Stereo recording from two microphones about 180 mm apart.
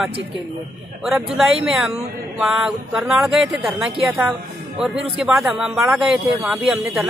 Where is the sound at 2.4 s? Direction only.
5° right (ahead or behind).